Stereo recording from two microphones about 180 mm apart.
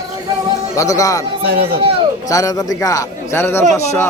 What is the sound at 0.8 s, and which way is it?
Speech, 20° left (ahead or behind).